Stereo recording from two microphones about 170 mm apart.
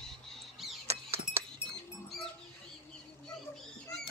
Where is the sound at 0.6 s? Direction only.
Centre (ahead or behind).